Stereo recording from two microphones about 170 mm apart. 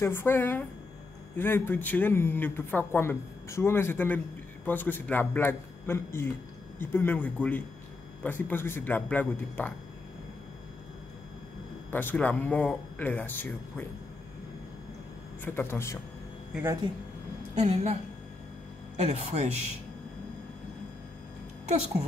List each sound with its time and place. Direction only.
0.0 s speech: 15° left (ahead or behind)
11.9 s speech: 10° left (ahead or behind)
15.4 s speech: 10° left (ahead or behind)
17.6 s speech: 40° right (ahead or behind)
18.9 s speech: 40° right (ahead or behind)